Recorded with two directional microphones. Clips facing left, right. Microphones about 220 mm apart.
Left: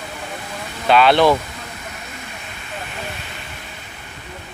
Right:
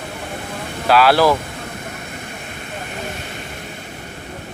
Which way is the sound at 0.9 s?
5° right (ahead or behind).